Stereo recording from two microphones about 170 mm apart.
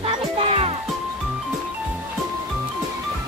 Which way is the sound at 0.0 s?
35° right (ahead or behind).